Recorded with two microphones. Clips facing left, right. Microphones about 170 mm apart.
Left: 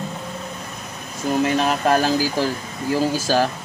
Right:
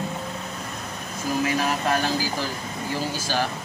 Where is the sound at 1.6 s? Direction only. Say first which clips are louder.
Left 5 dB; 30° left (ahead or behind).